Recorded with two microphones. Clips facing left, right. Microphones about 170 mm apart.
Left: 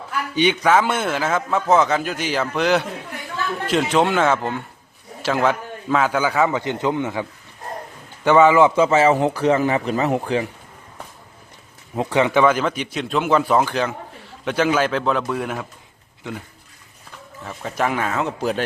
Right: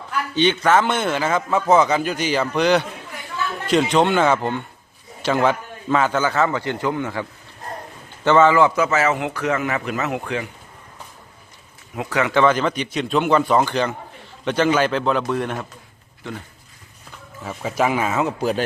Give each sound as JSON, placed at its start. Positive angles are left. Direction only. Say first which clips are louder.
{"t": 0.3, "sound": "a man's voice", "louder": "even", "side_deg": 10}
{"t": 11.9, "sound": "speech", "louder": "left 3 dB", "side_deg": 25}
{"t": 12.4, "sound": "a man's voice", "louder": "even", "side_deg": 5}
{"t": 17.4, "sound": "a man's voice", "louder": "right 2 dB", "side_deg": -5}